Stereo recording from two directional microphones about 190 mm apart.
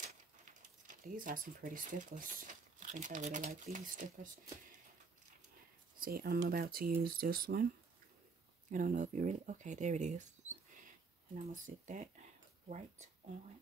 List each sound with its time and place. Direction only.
0.0 s speech: 40° right (ahead or behind)
5.9 s speech: 50° right (ahead or behind)
8.6 s speech: 40° right (ahead or behind)